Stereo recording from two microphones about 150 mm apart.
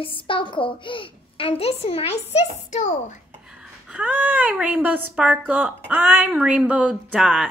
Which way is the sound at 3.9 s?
10° right (ahead or behind).